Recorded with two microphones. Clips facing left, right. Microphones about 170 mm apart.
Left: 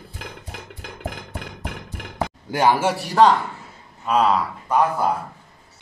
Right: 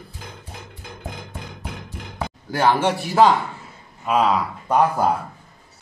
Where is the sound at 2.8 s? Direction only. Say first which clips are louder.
Even; 5° left (ahead or behind).